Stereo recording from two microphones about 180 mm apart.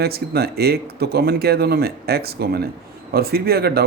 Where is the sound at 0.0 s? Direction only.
60° right (ahead or behind).